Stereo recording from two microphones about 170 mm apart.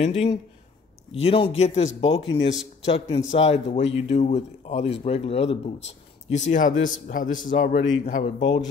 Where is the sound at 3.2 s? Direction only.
40° left (ahead or behind).